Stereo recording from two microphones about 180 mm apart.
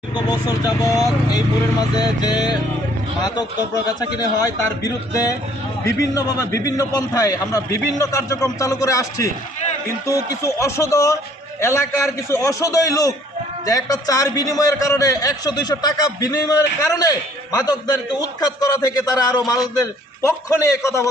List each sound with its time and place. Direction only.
0.3 s a man's voice: 20° left (ahead or behind)
4.2 s a man's voice: 20° left (ahead or behind)